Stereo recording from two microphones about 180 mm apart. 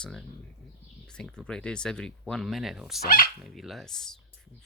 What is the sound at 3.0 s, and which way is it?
Speech, 55° left (ahead or behind).